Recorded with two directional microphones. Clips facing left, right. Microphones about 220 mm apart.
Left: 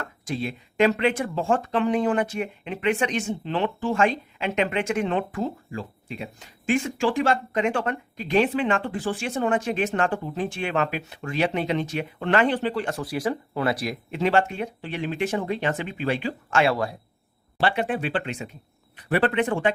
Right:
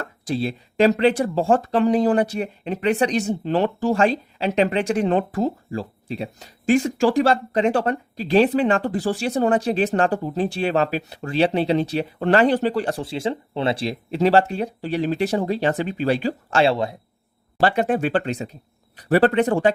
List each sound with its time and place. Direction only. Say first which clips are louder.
0.0 s speech: right 5 dB; 35° right (ahead or behind)
17.6 s speech: right 5 dB; 40° right (ahead or behind)